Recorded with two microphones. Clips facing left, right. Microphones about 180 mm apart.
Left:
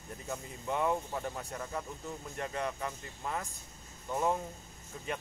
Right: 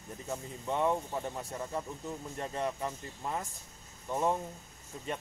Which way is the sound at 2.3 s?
30° right (ahead or behind).